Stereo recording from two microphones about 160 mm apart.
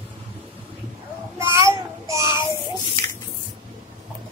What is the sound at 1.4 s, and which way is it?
Child singing, 15° right (ahead or behind).